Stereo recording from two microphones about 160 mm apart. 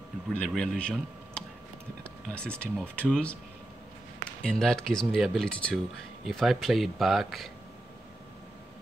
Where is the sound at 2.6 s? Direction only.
5° left (ahead or behind).